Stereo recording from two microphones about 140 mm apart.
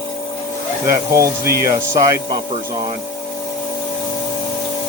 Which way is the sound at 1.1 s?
20° right (ahead or behind).